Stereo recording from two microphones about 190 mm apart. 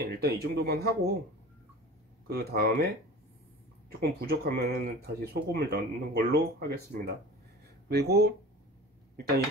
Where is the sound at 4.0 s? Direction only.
55° right (ahead or behind).